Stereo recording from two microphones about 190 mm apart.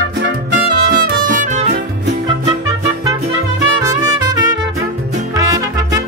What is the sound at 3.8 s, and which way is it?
Music, 20° right (ahead or behind).